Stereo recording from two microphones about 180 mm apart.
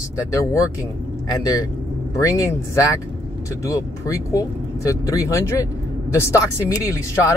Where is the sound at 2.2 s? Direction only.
15° left (ahead or behind).